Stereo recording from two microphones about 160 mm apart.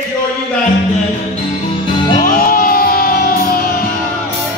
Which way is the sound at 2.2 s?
65° left (ahead or behind).